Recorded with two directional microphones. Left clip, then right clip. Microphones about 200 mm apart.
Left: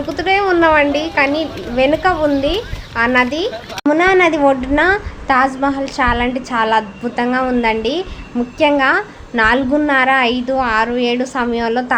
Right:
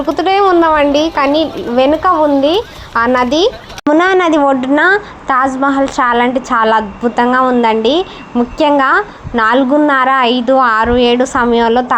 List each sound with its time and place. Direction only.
0.1 s a woman's voice: 20° right (ahead or behind)